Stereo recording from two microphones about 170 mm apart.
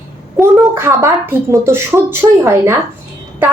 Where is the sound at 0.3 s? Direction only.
15° right (ahead or behind).